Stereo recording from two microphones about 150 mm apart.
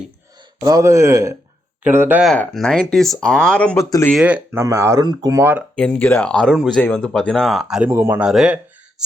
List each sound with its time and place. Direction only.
0.6 s speech: 25° right (ahead or behind)
2.2 s speech: 5° left (ahead or behind)
3.8 s speech: 20° left (ahead or behind)
4.1 s speech: 5° right (ahead or behind)
4.6 s speech: 20° right (ahead or behind)
5.7 s speech: 5° left (ahead or behind)
7.9 s speech: 15° right (ahead or behind)
8.3 s speech: 5° right (ahead or behind)